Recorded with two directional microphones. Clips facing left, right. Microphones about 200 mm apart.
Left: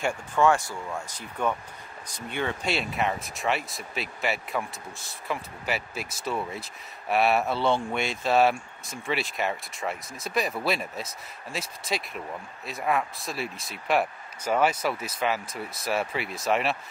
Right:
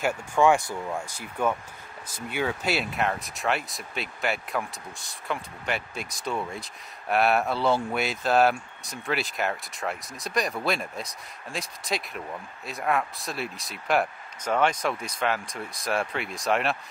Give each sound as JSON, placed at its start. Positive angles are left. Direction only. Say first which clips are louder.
{"t": 0.0, "sound": "speech", "louder": "right 1 dB", "side_deg": -10}